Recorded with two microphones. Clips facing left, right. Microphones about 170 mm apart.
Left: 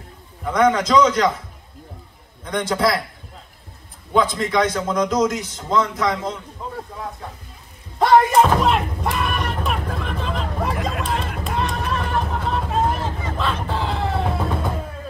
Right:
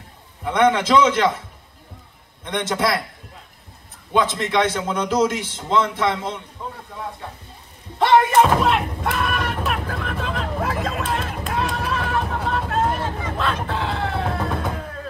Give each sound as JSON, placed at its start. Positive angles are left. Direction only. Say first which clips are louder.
{"t": 1.0, "sound": "a man's voice", "louder": "even", "side_deg": -25}
{"t": 2.7, "sound": "a man's voice", "louder": "left 2 dB", "side_deg": 0}
{"t": 4.2, "sound": "a man's voice", "louder": "left 1 dB", "side_deg": -25}
{"t": 4.7, "sound": "a man's voice", "louder": "left 1 dB", "side_deg": -5}
{"t": 5.4, "sound": "a man's voice", "louder": "even", "side_deg": -25}
{"t": 8.0, "sound": "a sound", "louder": "left 1 dB", "side_deg": 0}